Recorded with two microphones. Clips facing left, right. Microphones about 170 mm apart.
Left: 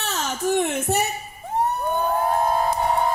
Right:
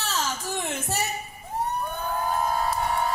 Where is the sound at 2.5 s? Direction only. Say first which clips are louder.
Left 5 dB; 25° left (ahead or behind).